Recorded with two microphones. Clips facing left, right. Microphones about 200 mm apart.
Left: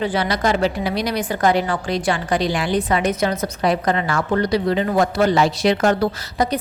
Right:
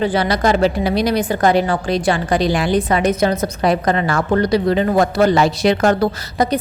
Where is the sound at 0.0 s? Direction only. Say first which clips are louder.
Right 4 dB; 35° right (ahead or behind).